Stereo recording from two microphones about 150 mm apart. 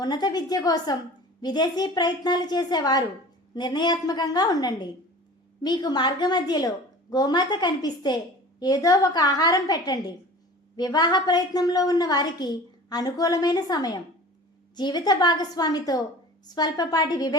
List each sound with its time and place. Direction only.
0.0 s a woman's voice: 25° left (ahead or behind)